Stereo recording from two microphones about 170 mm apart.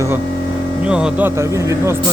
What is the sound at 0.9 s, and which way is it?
Speech, 5° right (ahead or behind).